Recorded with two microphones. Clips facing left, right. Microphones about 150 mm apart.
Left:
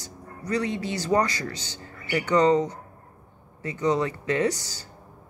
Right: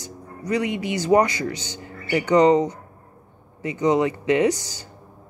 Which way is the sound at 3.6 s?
15° right (ahead or behind).